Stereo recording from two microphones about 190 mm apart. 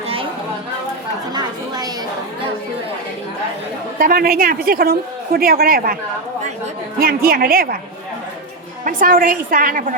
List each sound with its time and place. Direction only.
1.3 s chatter: 20° right (ahead or behind)
3.9 s a man's voice: 50° right (ahead or behind)
7.0 s a man's voice: 50° right (ahead or behind)
8.8 s a man's voice: 45° right (ahead or behind)